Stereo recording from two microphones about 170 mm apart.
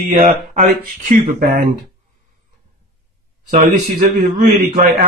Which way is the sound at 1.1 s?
55° right (ahead or behind).